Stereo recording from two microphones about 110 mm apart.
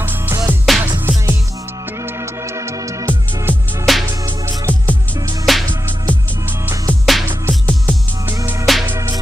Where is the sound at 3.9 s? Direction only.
Centre (ahead or behind).